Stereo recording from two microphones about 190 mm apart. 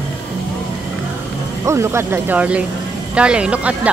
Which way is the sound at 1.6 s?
15° right (ahead or behind).